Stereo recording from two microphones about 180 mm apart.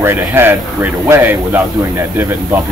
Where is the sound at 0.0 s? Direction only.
10° right (ahead or behind).